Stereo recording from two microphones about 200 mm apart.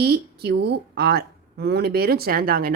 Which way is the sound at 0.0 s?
55° right (ahead or behind).